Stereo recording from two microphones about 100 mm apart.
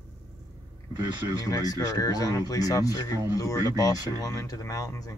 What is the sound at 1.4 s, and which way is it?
Speech, 40° left (ahead or behind).